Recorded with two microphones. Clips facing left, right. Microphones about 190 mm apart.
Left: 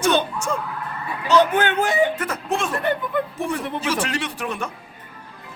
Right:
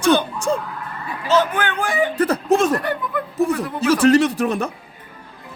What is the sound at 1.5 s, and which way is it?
Speech, 25° left (ahead or behind).